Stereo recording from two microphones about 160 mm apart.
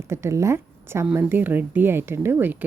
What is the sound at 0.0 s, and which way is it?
A woman's voice, 15° right (ahead or behind).